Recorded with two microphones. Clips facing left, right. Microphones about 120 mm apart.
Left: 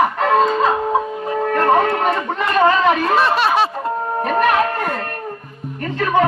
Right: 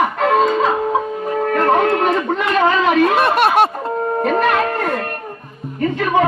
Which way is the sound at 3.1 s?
55° right (ahead or behind).